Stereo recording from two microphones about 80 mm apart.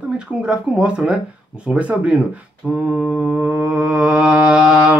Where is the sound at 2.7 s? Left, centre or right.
Centre.